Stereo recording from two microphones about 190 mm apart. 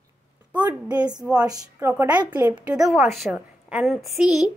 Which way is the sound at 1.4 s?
20° right (ahead or behind).